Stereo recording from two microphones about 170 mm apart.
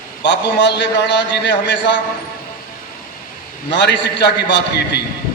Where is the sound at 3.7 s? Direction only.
90° left.